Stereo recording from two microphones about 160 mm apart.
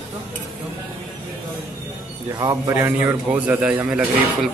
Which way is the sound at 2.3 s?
20° right (ahead or behind).